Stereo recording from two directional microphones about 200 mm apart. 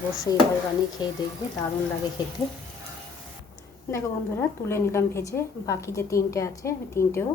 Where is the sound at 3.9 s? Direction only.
15° left (ahead or behind).